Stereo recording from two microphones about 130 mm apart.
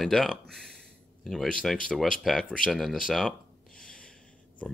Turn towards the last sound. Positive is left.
turn(degrees=5)  # may be behind; listen again after turning